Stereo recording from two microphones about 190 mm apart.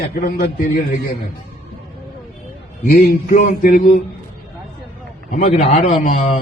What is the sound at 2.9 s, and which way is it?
Speech, 50° left (ahead or behind).